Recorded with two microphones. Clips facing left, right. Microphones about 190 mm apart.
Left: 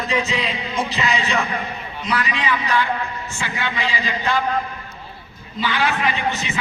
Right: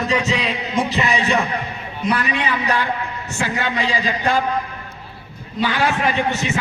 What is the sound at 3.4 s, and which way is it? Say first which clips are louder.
Speech: right 4 dB; 45° right (ahead or behind).